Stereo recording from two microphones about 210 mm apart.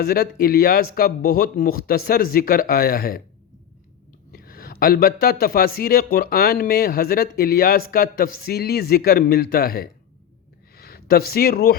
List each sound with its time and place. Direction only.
0.0 s speech: 45° left (ahead or behind)
4.3 s speech: 45° left (ahead or behind)